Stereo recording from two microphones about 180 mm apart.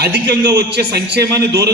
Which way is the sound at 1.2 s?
20° right (ahead or behind).